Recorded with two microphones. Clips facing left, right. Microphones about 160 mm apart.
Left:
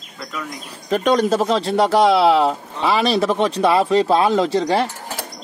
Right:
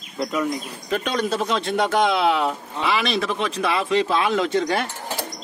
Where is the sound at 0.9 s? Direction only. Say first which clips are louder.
Left 7 dB; 40° left (ahead or behind).